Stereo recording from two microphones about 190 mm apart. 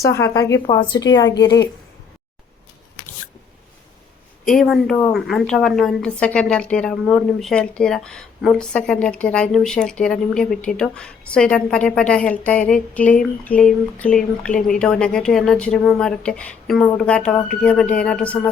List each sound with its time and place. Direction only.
0.0 s a woman's voice: 15° left (ahead or behind)
4.4 s a woman's voice: centre (ahead or behind)